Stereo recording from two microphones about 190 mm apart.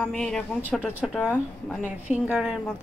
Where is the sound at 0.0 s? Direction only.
5° left (ahead or behind).